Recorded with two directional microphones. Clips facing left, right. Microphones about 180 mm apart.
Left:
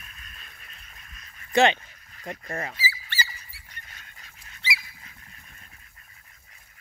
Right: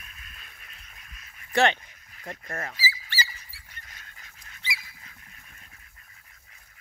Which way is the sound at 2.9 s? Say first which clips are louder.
Even; 60° left (ahead or behind).